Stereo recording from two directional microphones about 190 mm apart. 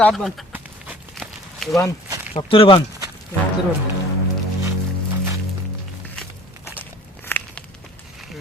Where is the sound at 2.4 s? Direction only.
30° left (ahead or behind).